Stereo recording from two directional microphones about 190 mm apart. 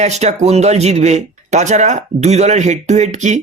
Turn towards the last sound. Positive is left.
turn(degrees=-40)  # may be behind; listen again after turning